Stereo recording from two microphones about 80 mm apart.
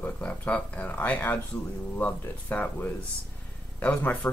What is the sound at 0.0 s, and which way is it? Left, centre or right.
Speech, centre.